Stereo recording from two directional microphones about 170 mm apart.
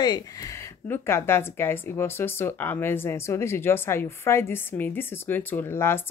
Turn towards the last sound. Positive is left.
turn(degrees=15)  # may be behind; listen again after turning